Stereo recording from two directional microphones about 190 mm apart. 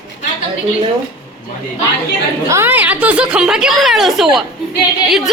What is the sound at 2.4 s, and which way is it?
A woman's voice, 15° right (ahead or behind).